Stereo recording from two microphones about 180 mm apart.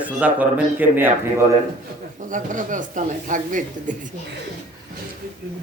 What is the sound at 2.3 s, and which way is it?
A man's voice, 45° right (ahead or behind).